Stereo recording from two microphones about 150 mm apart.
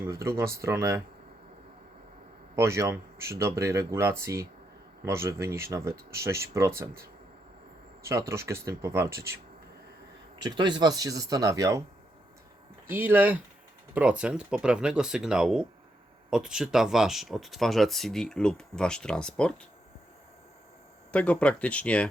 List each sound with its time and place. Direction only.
0.0 s speech: 20° right (ahead or behind)
2.6 s speech: 20° right (ahead or behind)
8.3 s speech: 20° right (ahead or behind)
10.3 s speech: 30° right (ahead or behind)
12.9 s speech: 15° right (ahead or behind); by 19.5 s 5° left (ahead or behind)
21.1 s speech: 10° left (ahead or behind)